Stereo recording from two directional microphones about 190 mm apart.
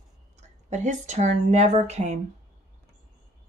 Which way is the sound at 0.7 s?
40° right (ahead or behind).